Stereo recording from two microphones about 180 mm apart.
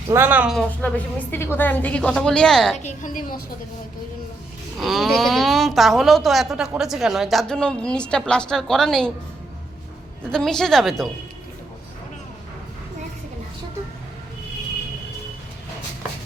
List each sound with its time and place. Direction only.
0.1 s speech: 10° right (ahead or behind)
0.8 s speech: 10° left (ahead or behind)
2.7 s a woman's voice: 40° left (ahead or behind)
4.8 s a woman's voice: centre (ahead or behind)
10.2 s a woman's voice: 5° left (ahead or behind)